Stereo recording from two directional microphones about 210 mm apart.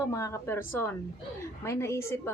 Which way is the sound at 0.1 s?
15° left (ahead or behind).